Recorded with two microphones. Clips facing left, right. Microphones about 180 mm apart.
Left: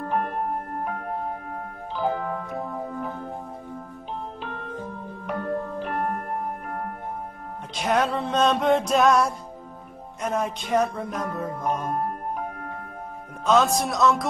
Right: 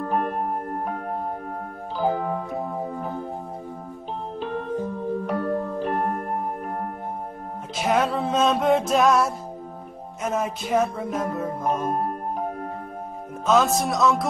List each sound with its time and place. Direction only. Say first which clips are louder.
0.1 s music: right 1 dB; 35° right (ahead or behind)
5.2 s music: left 2 dB; 35° right (ahead or behind)
7.7 s music: right 1 dB; centre (ahead or behind)
10.2 s speech: right 1 dB; 5° right (ahead or behind)
13.5 s speech: right 1 dB; centre (ahead or behind)